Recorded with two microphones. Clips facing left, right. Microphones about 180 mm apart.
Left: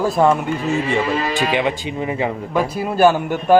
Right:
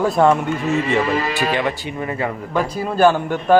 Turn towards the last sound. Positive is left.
turn(degrees=10)  # may be behind; listen again after turning